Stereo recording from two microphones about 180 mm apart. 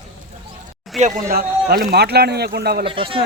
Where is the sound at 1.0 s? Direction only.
50° right (ahead or behind).